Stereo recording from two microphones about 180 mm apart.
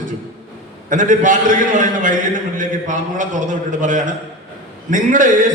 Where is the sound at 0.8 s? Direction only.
45° right (ahead or behind).